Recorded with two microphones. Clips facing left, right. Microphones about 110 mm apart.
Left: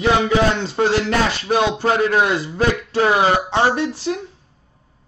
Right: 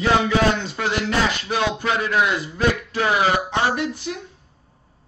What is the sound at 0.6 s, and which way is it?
Speech, 35° left (ahead or behind).